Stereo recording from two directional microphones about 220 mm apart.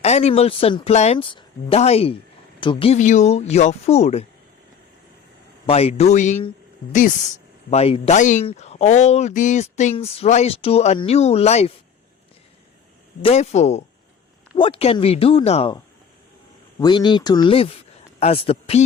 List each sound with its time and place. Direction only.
0.0 s speech: 30° left (ahead or behind)
5.6 s speech: 25° left (ahead or behind)
7.7 s speech: 25° left (ahead or behind)
13.2 s speech: 30° left (ahead or behind)
16.8 s a man's voice: 20° left (ahead or behind)